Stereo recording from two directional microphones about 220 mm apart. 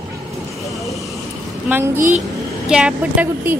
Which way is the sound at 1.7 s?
10° right (ahead or behind).